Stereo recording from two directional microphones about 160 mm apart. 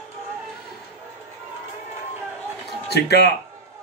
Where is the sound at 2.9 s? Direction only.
90° left.